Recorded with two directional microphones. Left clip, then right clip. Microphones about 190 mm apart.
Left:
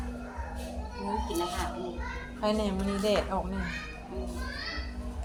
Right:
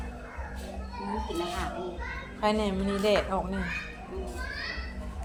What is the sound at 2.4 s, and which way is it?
Speech, 15° right (ahead or behind).